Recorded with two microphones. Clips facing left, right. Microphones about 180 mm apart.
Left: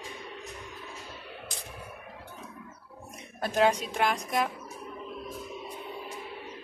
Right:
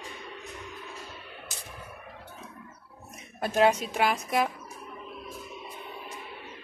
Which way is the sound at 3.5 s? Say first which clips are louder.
Right 2 dB; 5° right (ahead or behind).